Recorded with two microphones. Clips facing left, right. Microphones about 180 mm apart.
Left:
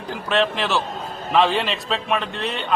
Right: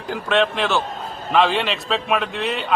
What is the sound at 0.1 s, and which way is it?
A man's voice, centre (ahead or behind).